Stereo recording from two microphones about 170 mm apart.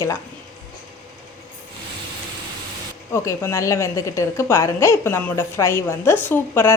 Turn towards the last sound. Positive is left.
turn(degrees=15)  # may be behind; listen again after turning